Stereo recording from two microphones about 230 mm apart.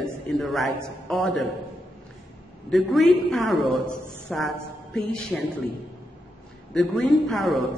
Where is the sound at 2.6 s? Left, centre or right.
Centre.